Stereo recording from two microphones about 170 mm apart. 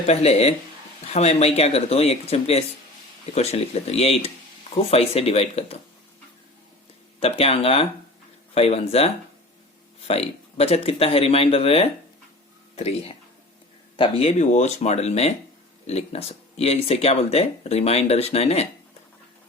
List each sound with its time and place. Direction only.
0.0 s speech: 40° left (ahead or behind)
7.2 s speech: 35° left (ahead or behind)